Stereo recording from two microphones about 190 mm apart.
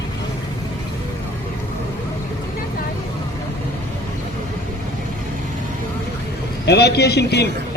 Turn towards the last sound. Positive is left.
turn(degrees=60)  # may be behind; listen again after turning